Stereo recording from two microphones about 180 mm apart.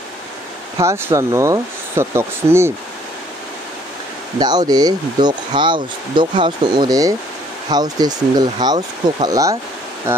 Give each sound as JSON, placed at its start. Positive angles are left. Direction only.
{"t": 0.7, "sound": "speech", "side_deg": -15}
{"t": 4.4, "sound": "speech", "side_deg": -20}